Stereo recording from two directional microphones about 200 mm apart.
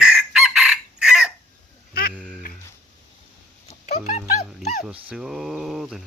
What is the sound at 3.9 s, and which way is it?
Dog, 35° left (ahead or behind).